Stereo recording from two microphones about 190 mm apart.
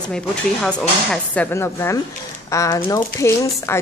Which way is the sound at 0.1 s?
5° left (ahead or behind).